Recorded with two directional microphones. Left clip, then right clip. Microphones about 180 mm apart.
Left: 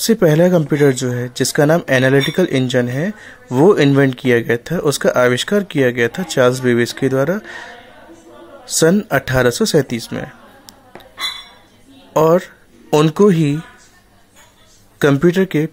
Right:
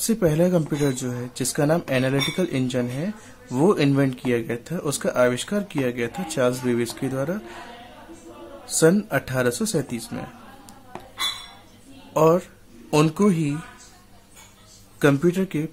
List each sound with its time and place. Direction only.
0.0 s speech: 30° left (ahead or behind)
8.6 s speech: 30° left (ahead or behind)
12.1 s speech: 30° left (ahead or behind)
15.0 s speech: 30° left (ahead or behind)